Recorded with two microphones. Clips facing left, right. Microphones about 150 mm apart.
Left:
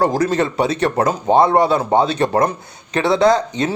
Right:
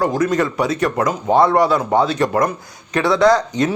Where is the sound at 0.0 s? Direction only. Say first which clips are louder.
Left 1 dB; 35° left (ahead or behind).